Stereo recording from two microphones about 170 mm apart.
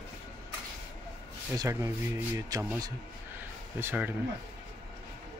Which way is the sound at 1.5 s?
20° right (ahead or behind).